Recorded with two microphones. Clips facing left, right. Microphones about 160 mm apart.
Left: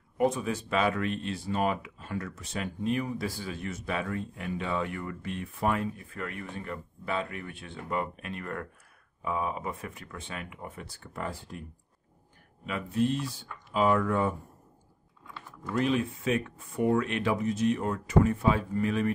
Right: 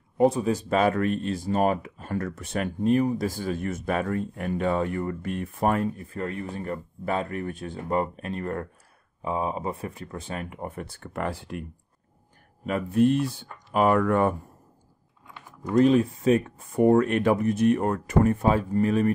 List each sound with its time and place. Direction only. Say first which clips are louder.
0.2 s speech: right 6 dB; 35° right (ahead or behind); by 11.6 s 70° right (ahead or behind)
12.6 s speech: right 7 dB; 50° right (ahead or behind)
15.7 s speech: right 8 dB; 40° right (ahead or behind)